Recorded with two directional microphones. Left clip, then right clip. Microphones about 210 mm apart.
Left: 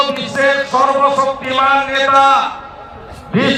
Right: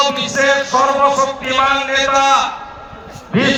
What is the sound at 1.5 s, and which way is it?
Speech, 15° right (ahead or behind).